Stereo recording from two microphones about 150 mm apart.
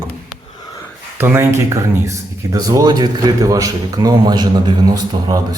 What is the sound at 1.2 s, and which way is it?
Speech, 15° right (ahead or behind).